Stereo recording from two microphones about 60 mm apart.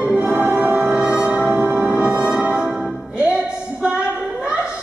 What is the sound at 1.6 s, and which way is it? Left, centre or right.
Music, right.